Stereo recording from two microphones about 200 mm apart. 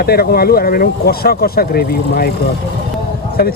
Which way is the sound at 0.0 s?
50° left (ahead or behind).